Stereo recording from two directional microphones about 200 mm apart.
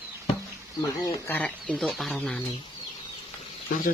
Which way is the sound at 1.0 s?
15° left (ahead or behind).